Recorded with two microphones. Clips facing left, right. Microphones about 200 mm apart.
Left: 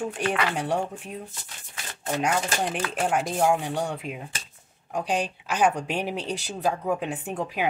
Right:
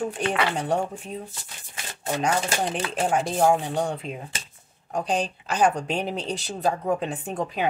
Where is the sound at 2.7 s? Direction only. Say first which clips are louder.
Right 1 dB; 25° right (ahead or behind).